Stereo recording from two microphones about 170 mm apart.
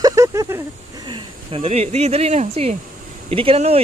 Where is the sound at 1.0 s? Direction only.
30° right (ahead or behind).